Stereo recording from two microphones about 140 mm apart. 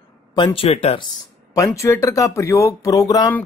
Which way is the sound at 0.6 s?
45° left (ahead or behind).